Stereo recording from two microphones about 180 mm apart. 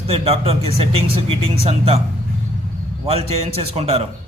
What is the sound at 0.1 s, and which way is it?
A man's voice, 35° right (ahead or behind).